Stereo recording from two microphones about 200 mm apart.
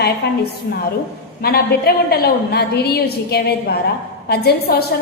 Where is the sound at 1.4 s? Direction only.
50° left (ahead or behind).